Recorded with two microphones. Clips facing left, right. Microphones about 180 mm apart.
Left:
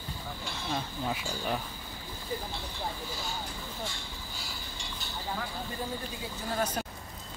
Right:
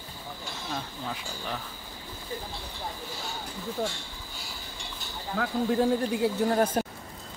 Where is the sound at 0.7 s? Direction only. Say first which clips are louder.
Left 2 dB; 5° left (ahead or behind).